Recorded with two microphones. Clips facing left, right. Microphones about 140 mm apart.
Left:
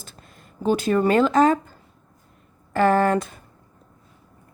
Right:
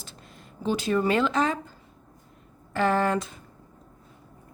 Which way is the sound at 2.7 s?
50° left (ahead or behind).